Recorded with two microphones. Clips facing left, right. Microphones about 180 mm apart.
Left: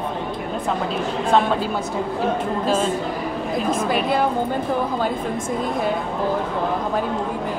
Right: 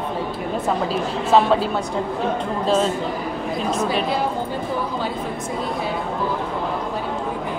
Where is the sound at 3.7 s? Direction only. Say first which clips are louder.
Even; 50° left (ahead or behind).